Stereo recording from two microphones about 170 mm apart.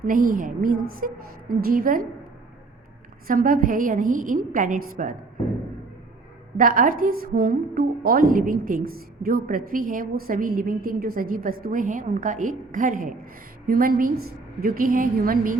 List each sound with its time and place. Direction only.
0.0 s a woman's voice: 55° right (ahead or behind)
3.2 s a woman's voice: 55° right (ahead or behind)
6.6 s a woman's voice: 55° right (ahead or behind)